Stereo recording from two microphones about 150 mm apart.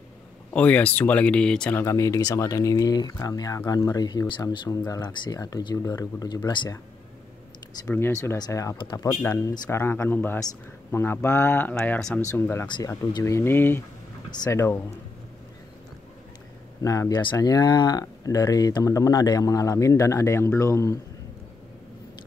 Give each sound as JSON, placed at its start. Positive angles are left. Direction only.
{"t": 0.5, "sound": "speech", "side_deg": 10}
{"t": 7.8, "sound": "speech", "side_deg": 15}
{"t": 16.8, "sound": "speech", "side_deg": 20}